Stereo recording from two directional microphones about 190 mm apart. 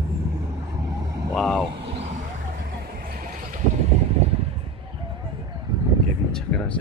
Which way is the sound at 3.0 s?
50° right (ahead or behind).